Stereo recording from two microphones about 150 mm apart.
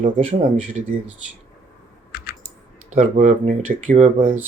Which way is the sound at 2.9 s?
50° right (ahead or behind).